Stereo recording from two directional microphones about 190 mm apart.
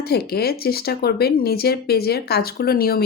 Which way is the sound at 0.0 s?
55° left (ahead or behind).